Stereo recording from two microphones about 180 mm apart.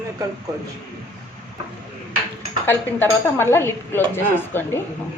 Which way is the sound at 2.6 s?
10° left (ahead or behind).